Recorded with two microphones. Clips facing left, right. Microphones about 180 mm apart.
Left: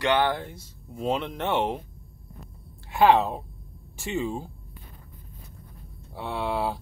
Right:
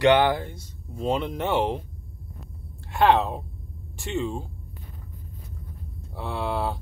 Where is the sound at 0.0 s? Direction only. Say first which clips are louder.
Right 5 dB; 20° right (ahead or behind).